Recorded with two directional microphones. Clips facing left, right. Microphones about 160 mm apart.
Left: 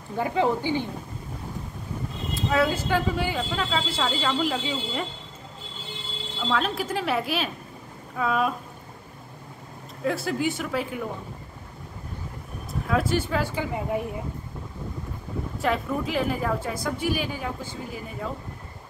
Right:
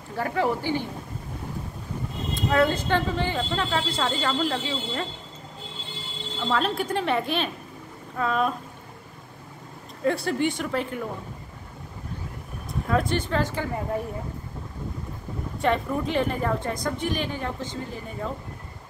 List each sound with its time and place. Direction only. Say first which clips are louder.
0.1 s speech: left 1 dB; 20° left (ahead or behind)
2.3 s speech: right 2 dB; 5° left (ahead or behind)
6.4 s a woman's voice: right 1 dB; centre (ahead or behind)
10.0 s a woman's voice: right 2 dB; centre (ahead or behind)
12.8 s speech: even; 5° left (ahead or behind)
15.6 s a woman's voice: right 2 dB; 5° left (ahead or behind)